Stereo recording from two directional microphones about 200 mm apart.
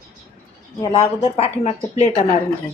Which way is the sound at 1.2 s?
30° left (ahead or behind).